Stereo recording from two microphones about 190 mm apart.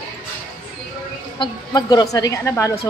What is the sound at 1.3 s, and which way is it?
A woman's voice, 20° left (ahead or behind).